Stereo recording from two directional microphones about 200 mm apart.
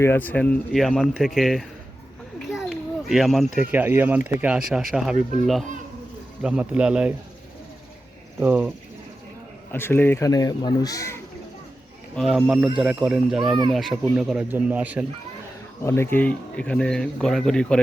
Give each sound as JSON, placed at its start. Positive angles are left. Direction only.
{"t": 0.0, "sound": "speech", "side_deg": 10}
{"t": 2.5, "sound": "children playing", "side_deg": 0}
{"t": 3.6, "sound": "speech", "side_deg": -10}
{"t": 6.4, "sound": "speech", "side_deg": -5}
{"t": 8.4, "sound": "speech", "side_deg": -10}
{"t": 9.7, "sound": "speech", "side_deg": 10}
{"t": 12.1, "sound": "speech", "side_deg": 0}
{"t": 15.8, "sound": "speech", "side_deg": 15}